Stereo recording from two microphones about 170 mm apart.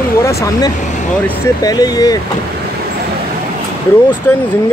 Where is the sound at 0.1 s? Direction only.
15° left (ahead or behind).